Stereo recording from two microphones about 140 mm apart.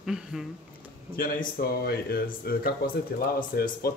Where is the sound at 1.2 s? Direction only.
90° left.